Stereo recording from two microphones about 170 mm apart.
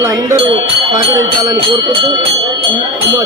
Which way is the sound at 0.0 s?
20° right (ahead or behind).